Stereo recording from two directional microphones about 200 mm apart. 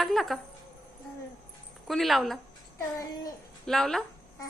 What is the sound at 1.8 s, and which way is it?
Speech, centre (ahead or behind).